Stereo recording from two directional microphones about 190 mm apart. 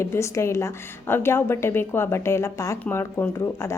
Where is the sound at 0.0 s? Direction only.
15° left (ahead or behind).